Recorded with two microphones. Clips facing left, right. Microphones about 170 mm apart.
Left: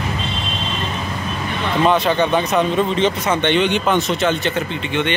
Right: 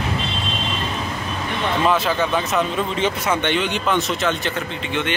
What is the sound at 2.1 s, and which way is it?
Speech, 25° left (ahead or behind).